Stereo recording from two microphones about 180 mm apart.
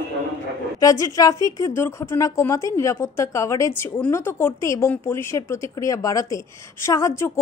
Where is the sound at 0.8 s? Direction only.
20° left (ahead or behind).